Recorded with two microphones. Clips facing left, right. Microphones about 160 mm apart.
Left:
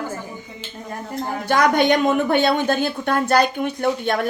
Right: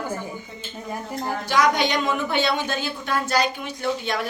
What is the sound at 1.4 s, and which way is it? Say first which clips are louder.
A woman's voice: left 4 dB; 55° left (ahead or behind).